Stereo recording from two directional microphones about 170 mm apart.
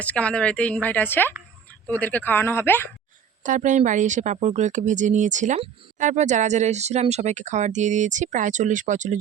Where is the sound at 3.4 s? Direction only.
50° right (ahead or behind).